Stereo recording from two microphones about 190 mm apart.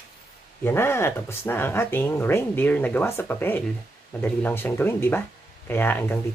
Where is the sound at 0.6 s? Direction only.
10° left (ahead or behind).